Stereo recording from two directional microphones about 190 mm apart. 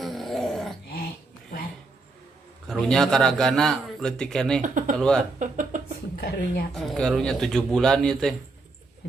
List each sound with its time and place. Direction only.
0.0 s a sound: centre (ahead or behind)
2.6 s a man's voice: 5° left (ahead or behind)
4.6 s speech: 45° right (ahead or behind)
4.9 s a man's voice: 5° left (ahead or behind)
5.4 s speech: 45° right (ahead or behind)
6.1 s speech: 55° left (ahead or behind)
6.7 s a man's voice: centre (ahead or behind)